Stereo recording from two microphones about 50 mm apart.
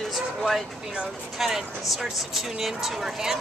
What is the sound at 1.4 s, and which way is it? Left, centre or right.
Speech, centre.